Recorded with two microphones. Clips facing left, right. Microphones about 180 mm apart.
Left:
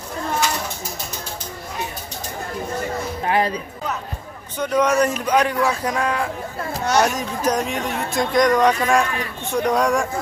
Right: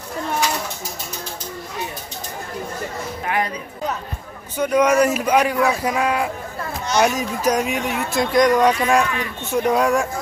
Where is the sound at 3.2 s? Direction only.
30° left (ahead or behind).